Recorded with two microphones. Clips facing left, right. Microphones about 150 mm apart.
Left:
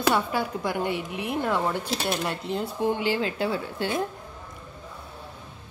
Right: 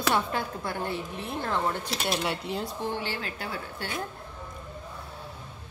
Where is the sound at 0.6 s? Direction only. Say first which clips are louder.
Left 4 dB; 15° left (ahead or behind).